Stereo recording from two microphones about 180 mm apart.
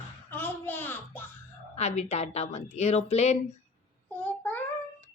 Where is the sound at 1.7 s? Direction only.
40° left (ahead or behind).